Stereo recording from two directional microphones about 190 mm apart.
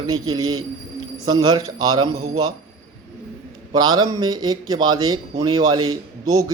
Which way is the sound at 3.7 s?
20° right (ahead or behind).